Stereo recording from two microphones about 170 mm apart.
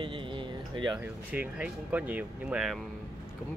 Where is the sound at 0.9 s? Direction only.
10° right (ahead or behind).